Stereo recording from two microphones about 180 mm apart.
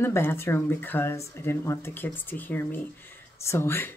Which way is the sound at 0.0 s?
15° left (ahead or behind).